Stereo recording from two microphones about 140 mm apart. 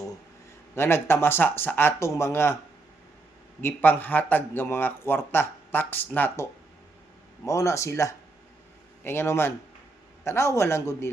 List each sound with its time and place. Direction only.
0.8 s a man's voice: 15° left (ahead or behind)
3.6 s a man's voice: 15° left (ahead or behind)